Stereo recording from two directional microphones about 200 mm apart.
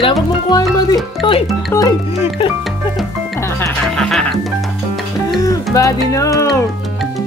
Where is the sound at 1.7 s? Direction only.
10° left (ahead or behind).